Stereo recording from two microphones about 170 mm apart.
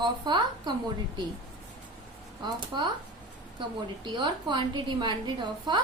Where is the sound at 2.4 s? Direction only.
25° right (ahead or behind).